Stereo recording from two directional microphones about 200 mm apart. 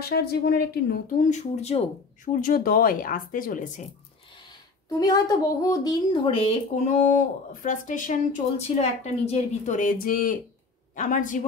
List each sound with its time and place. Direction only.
0.0 s speech: 50° left (ahead or behind)
1.2 s a woman's voice: 35° left (ahead or behind)
4.8 s a woman's voice: 15° left (ahead or behind); by 11.2 s 40° left (ahead or behind)